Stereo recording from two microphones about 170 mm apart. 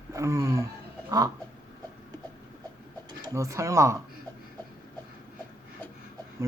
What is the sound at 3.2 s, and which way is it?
Speech, 20° right (ahead or behind).